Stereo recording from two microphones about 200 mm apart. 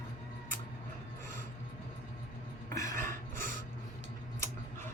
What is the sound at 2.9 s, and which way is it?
Filing, 40° right (ahead or behind).